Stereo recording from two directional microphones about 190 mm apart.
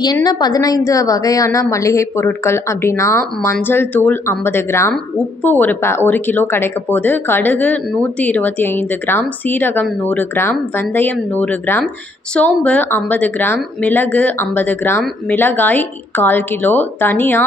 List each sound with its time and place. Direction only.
0.0 s speech: 20° left (ahead or behind)